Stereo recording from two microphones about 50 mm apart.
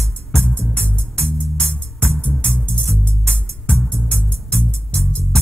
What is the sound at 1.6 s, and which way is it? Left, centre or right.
Music, centre.